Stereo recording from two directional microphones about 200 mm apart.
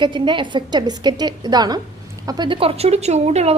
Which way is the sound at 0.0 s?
25° right (ahead or behind).